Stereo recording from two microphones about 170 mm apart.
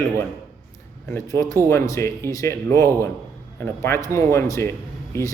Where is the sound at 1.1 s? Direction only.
15° left (ahead or behind).